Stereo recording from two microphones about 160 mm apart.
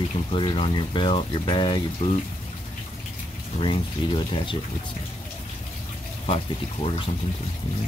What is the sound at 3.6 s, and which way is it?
Speech, 35° left (ahead or behind).